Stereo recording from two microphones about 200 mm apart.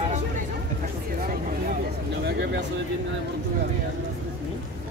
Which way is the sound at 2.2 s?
55° right (ahead or behind).